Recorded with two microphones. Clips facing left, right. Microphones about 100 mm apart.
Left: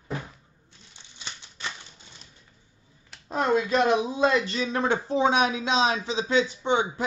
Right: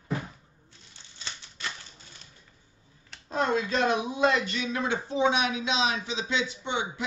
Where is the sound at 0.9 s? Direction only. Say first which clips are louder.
Left 1 dB; 15° left (ahead or behind).